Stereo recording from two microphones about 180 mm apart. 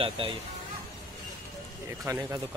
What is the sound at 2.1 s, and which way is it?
Speech, 20° right (ahead or behind).